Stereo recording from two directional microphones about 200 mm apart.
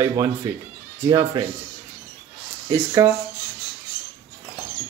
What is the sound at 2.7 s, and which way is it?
Speech, 15° right (ahead or behind).